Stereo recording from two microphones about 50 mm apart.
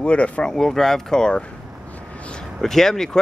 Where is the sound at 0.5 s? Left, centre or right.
Centre.